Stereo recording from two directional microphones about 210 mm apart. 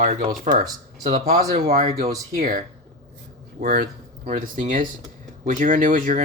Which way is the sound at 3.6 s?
45° right (ahead or behind).